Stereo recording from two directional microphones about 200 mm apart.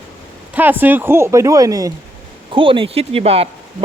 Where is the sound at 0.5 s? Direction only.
10° right (ahead or behind).